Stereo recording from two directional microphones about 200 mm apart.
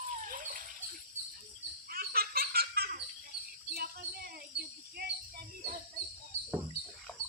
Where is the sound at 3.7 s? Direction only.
50° right (ahead or behind).